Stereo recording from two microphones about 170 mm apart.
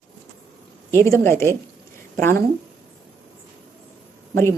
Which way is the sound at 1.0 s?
15° left (ahead or behind).